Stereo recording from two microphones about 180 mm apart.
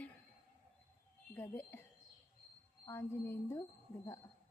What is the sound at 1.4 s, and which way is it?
Speech, 10° left (ahead or behind).